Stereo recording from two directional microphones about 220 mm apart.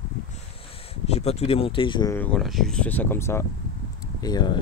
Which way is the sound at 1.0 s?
30° left (ahead or behind).